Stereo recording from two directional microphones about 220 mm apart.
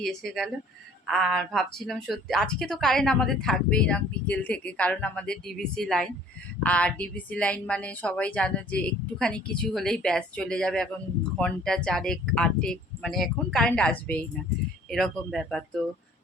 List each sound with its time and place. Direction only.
0.0 s a woman's voice: centre (ahead or behind)